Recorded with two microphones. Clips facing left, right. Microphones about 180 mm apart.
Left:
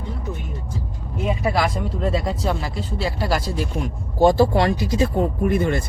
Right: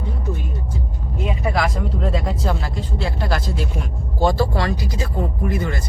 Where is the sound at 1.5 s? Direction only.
Centre (ahead or behind).